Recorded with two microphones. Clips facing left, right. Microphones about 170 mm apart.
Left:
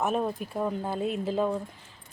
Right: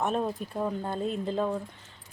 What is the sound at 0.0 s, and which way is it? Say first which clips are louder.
Speech: left 1 dB; 5° left (ahead or behind).